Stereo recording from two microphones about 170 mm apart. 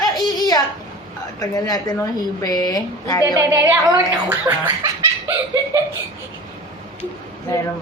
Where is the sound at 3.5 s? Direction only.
20° right (ahead or behind).